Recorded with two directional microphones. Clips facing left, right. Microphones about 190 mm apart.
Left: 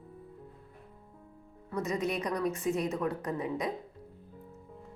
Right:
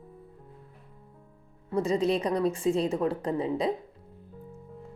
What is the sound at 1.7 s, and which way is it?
Speech, 30° right (ahead or behind).